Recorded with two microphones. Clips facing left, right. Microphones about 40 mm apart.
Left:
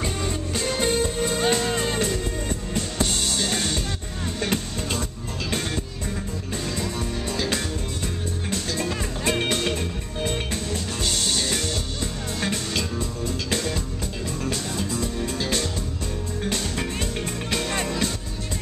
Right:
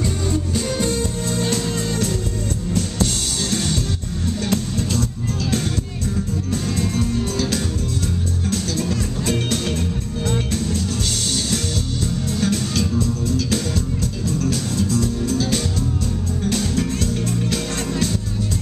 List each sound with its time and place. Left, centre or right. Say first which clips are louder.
0.7 s music: left 3 dB; left
6.5 s music: right 5 dB; centre
8.5 s music: right 4 dB; centre
12.3 s music: right 5 dB; centre
16.4 s music: right 6 dB; centre